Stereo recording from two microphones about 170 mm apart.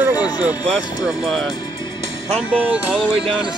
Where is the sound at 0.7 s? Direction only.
Centre (ahead or behind).